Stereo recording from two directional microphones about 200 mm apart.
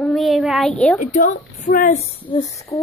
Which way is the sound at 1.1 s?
40° left (ahead or behind).